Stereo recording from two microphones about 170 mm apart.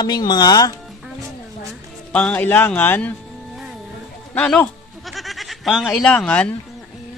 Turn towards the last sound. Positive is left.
turn(degrees=5)  # may be behind; listen again after turning